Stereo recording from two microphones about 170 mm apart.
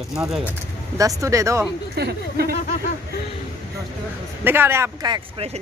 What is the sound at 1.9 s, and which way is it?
Speech, 70° right (ahead or behind).